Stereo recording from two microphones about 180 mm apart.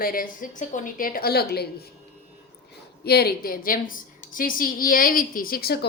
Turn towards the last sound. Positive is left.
turn(degrees=60)  # may be behind; listen again after turning